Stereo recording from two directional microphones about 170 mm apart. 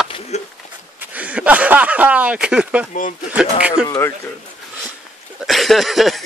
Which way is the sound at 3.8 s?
20° left (ahead or behind).